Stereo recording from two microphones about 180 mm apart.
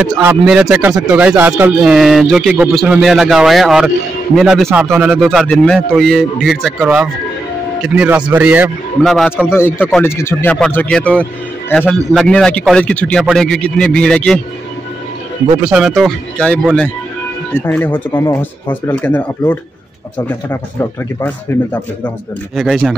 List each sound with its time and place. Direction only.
0.2 s speech: 10° right (ahead or behind)
9.5 s speech: 15° left (ahead or behind)
9.8 s speech: centre (ahead or behind)
10.0 s speech: 15° left (ahead or behind)
15.6 s speech: 5° right (ahead or behind)
17.6 s speech: 10° left (ahead or behind)
22.6 s speech: centre (ahead or behind)